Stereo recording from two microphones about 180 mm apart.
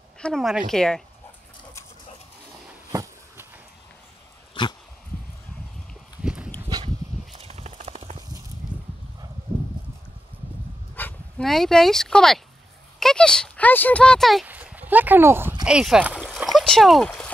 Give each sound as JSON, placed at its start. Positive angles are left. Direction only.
{"t": 0.2, "sound": "speech", "side_deg": 0}
{"t": 2.9, "sound": "a sound", "side_deg": -20}
{"t": 4.6, "sound": "dog", "side_deg": 25}
{"t": 6.2, "sound": "walk", "side_deg": -5}
{"t": 7.3, "sound": "clip-clop", "side_deg": -35}
{"t": 11.0, "sound": "speech", "side_deg": 10}
{"t": 15.6, "sound": "a sound", "side_deg": -5}